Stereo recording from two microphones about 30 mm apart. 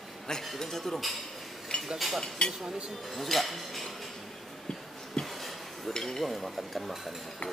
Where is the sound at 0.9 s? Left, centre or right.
Centre.